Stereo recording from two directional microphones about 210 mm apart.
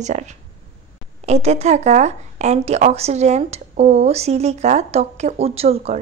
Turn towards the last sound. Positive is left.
turn(degrees=-30)  # may be behind; listen again after turning